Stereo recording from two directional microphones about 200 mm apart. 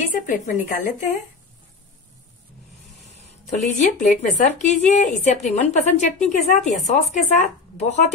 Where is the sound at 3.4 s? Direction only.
35° left (ahead or behind).